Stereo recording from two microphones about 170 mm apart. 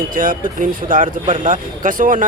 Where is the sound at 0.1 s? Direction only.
50° right (ahead or behind).